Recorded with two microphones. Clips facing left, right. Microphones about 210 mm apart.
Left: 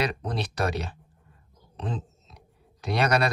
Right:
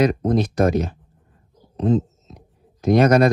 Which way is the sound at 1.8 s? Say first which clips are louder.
Right 15 dB; 40° right (ahead or behind).